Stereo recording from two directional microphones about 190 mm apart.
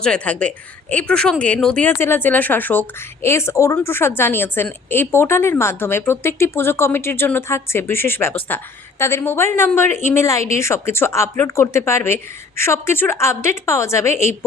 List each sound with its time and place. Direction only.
0.0 s a woman's voice: 5° left (ahead or behind)